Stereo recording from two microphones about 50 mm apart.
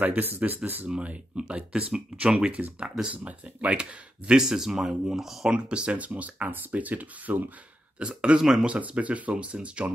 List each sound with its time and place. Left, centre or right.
0.0 s speech: right
0.8 s speech: centre
4.3 s speech: centre
5.5 s speech: right
8.0 s speech: centre
8.6 s speech: right